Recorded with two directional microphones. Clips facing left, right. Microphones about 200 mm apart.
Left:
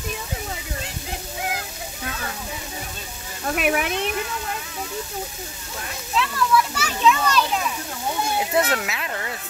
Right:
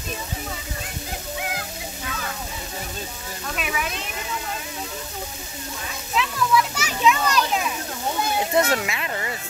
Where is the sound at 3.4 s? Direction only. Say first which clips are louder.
Left 7 dB; 60° left (ahead or behind).